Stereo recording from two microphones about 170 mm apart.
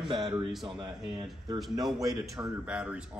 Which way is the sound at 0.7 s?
25° right (ahead or behind).